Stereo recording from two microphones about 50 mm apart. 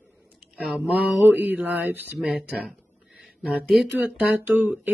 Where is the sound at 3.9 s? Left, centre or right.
Right.